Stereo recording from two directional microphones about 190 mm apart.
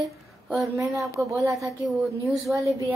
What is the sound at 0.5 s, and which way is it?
Speech, centre (ahead or behind).